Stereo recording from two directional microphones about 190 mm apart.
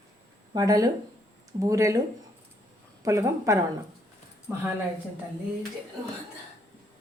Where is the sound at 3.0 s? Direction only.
15° right (ahead or behind).